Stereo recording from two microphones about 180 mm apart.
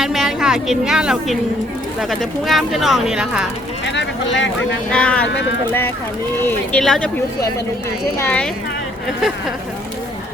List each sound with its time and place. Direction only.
0.0 s a woman's voice: centre (ahead or behind)
3.8 s speech: 85° left
4.9 s speech: 5° left (ahead or behind)
6.7 s speech: 5° left (ahead or behind)
8.2 s speech: 10° left (ahead or behind)